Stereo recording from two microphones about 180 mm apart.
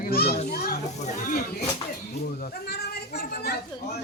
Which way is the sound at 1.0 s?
45° left (ahead or behind).